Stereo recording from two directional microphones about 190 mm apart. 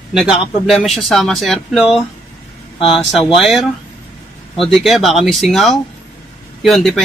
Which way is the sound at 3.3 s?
Centre (ahead or behind).